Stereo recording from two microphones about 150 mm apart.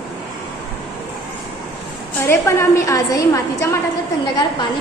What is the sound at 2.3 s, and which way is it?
A woman's voice, 20° left (ahead or behind).